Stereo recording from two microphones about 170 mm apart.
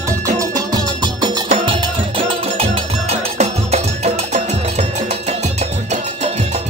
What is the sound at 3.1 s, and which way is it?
Music, 40° right (ahead or behind).